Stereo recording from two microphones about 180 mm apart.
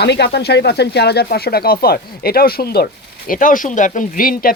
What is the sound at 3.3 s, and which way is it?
Speech, 50° left (ahead or behind).